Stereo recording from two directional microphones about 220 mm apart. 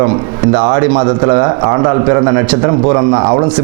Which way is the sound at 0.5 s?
20° right (ahead or behind).